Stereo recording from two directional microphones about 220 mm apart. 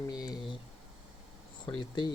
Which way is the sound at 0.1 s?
20° left (ahead or behind).